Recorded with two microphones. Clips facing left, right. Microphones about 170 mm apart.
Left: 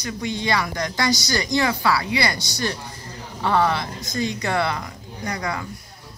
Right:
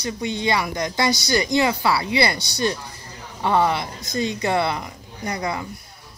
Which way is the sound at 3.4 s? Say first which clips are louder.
Right 1 dB; 20° right (ahead or behind).